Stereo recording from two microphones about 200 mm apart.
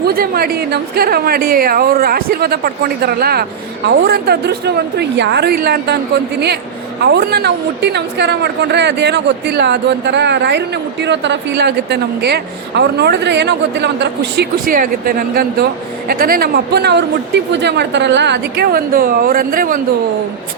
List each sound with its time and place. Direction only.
0.0 s a woman's voice: 50° right (ahead or behind)
7.0 s speech: 55° right (ahead or behind)